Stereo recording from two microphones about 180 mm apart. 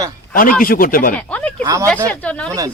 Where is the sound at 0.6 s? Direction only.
50° left (ahead or behind).